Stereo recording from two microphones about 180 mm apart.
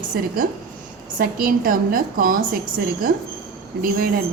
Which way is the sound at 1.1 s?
55° right (ahead or behind).